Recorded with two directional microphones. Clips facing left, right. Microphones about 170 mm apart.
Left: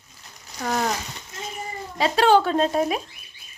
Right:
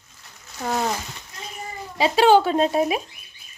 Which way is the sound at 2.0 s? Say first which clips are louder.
Right 2 dB; 5° right (ahead or behind).